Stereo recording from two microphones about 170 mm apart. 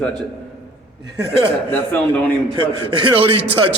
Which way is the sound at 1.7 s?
10° left (ahead or behind).